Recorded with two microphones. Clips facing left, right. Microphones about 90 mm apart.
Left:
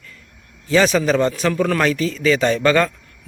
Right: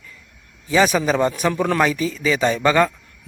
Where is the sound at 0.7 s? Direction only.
15° right (ahead or behind).